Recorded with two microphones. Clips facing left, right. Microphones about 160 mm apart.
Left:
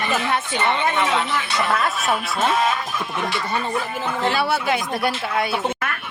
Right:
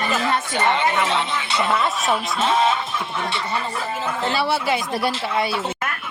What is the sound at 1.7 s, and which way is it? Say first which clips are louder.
Speech: right 1 dB; centre (ahead or behind).